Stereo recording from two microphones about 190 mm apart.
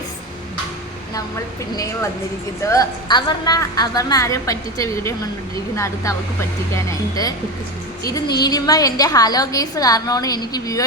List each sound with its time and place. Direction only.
1.7 s a woman's voice: 20° left (ahead or behind)
8.4 s a woman's voice: 20° left (ahead or behind)